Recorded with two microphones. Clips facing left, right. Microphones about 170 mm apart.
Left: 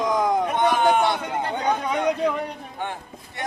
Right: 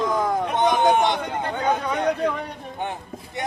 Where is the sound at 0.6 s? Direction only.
20° right (ahead or behind).